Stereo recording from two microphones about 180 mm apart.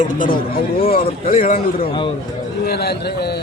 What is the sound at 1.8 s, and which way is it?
Speech, 30° left (ahead or behind).